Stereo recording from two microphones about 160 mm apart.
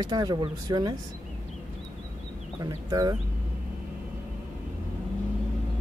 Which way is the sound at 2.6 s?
20° right (ahead or behind).